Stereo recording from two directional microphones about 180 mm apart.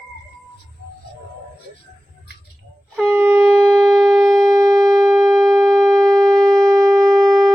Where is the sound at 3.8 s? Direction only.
Centre (ahead or behind).